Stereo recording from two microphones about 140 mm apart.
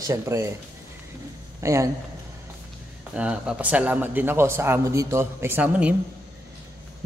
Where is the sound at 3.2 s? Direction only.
5° right (ahead or behind).